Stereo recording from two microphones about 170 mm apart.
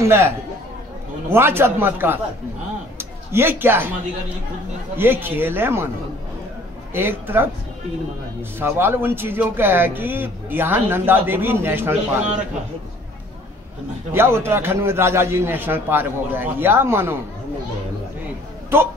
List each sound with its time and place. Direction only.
0.0 s speech: 15° right (ahead or behind)
1.3 s a man's voice: 15° right (ahead or behind)
4.9 s speech: 10° right (ahead or behind)
6.9 s speech: 10° right (ahead or behind)
14.1 s speech: 15° right (ahead or behind)